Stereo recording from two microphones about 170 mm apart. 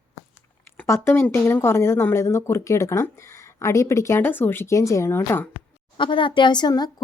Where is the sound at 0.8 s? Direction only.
15° left (ahead or behind).